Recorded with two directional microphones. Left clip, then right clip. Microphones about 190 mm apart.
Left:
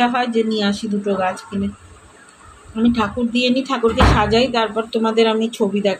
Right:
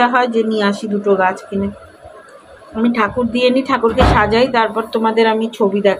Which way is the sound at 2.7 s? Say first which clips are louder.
Right 3 dB; centre (ahead or behind).